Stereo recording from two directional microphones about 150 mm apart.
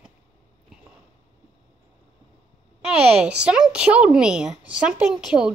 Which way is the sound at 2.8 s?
5° right (ahead or behind).